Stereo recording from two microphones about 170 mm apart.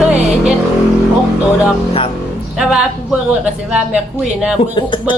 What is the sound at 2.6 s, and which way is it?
A woman's voice, 5° right (ahead or behind).